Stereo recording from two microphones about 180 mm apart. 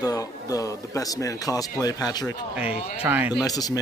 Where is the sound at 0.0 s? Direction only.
20° left (ahead or behind).